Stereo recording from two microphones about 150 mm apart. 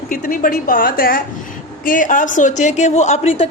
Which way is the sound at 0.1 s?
65° left (ahead or behind).